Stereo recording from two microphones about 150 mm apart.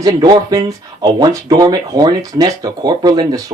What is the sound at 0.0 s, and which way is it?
Speech, 25° right (ahead or behind).